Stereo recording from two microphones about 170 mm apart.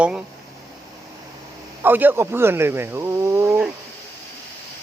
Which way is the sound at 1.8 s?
10° right (ahead or behind).